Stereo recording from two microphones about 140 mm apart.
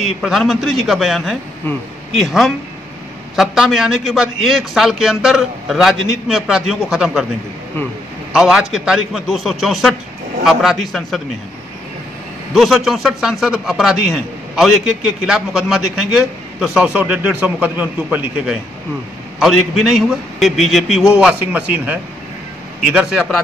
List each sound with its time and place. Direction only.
0.0 s a man's voice: centre (ahead or behind)
8.3 s a man's voice: 5° right (ahead or behind)
12.5 s a man's voice: centre (ahead or behind)
22.9 s a man's voice: centre (ahead or behind)